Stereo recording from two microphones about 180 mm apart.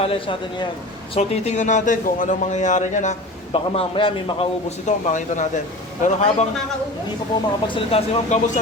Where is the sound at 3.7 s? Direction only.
30° left (ahead or behind).